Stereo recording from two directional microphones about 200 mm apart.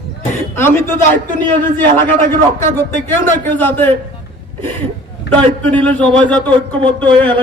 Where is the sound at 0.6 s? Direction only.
10° left (ahead or behind).